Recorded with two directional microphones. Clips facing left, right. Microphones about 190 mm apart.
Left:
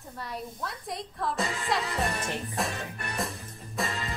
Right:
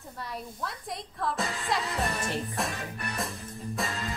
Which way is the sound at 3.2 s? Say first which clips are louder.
Left 1 dB; centre (ahead or behind).